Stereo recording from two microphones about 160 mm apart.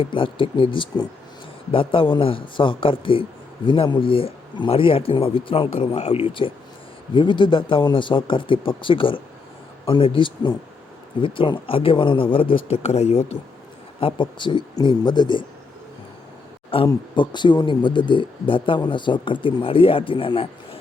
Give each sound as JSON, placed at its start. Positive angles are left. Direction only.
{"t": 0.0, "sound": "speech", "side_deg": 30}
{"t": 14.0, "sound": "speech", "side_deg": 30}
{"t": 16.7, "sound": "speech", "side_deg": 30}